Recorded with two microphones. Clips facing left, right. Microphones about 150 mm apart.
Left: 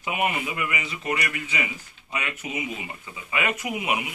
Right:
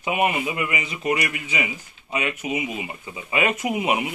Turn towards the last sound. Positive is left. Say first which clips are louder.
# right 5 dB
turn(degrees=-30)  # may be behind; listen again after turning